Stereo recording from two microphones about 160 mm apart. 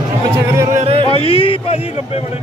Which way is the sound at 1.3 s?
35° left (ahead or behind).